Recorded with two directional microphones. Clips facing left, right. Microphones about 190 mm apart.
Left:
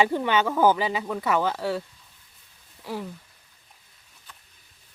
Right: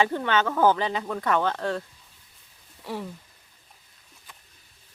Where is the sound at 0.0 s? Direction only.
10° left (ahead or behind).